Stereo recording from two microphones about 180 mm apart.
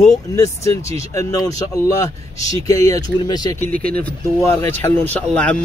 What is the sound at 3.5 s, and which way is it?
Speech, 10° left (ahead or behind).